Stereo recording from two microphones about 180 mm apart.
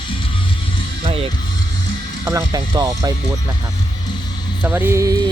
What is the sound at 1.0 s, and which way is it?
Music, 30° right (ahead or behind).